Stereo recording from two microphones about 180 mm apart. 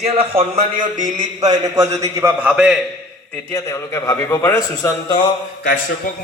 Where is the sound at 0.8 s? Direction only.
45° right (ahead or behind).